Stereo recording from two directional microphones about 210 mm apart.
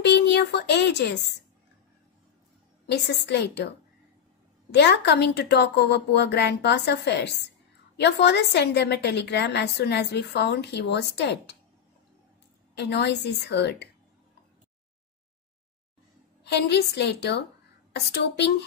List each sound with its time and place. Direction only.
0.0 s speech: 55° left (ahead or behind)
2.9 s a woman's voice: 55° left (ahead or behind)
12.7 s a woman's voice: 55° left (ahead or behind)
16.4 s a woman's voice: 55° left (ahead or behind)